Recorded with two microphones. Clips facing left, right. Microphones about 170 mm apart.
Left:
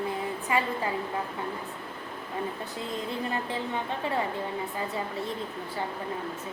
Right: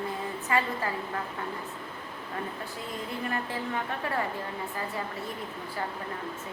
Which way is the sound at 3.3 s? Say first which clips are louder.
Left 1 dB; 20° left (ahead or behind).